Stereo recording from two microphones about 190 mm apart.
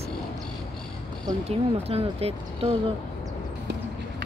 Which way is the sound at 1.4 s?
30° right (ahead or behind).